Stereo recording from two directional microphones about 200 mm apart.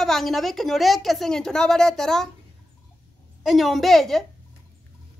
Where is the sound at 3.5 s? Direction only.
Centre (ahead or behind).